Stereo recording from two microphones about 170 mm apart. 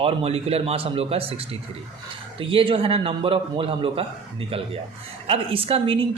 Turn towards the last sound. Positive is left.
turn(degrees=-35)  # may be behind; listen again after turning